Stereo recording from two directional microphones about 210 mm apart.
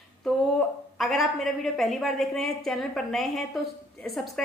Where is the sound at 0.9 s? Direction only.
Centre (ahead or behind).